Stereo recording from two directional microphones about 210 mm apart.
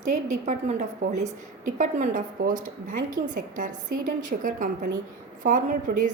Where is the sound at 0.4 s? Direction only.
35° right (ahead or behind).